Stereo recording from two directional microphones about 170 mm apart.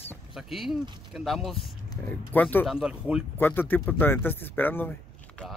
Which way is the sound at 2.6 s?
5° right (ahead or behind).